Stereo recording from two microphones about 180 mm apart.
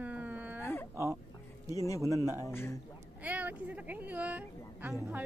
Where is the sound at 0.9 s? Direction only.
15° right (ahead or behind).